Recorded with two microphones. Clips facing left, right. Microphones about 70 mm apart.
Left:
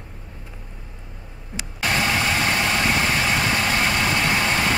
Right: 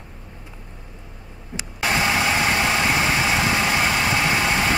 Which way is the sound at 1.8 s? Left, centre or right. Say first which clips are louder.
Right 1 dB; centre.